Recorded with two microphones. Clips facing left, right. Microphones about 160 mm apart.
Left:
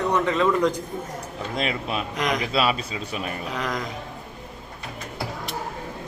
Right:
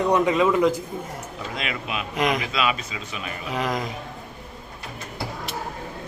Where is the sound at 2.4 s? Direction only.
35° left (ahead or behind).